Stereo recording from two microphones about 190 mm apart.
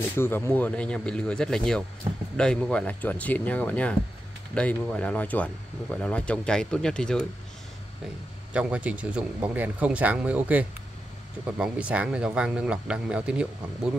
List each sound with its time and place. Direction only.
0.1 s speech: 10° left (ahead or behind)
8.5 s speech: 5° right (ahead or behind)